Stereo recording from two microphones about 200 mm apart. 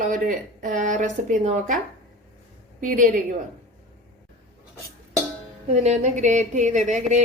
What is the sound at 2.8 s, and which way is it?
Speech, 40° right (ahead or behind).